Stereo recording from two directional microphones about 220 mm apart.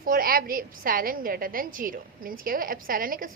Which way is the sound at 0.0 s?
40° right (ahead or behind).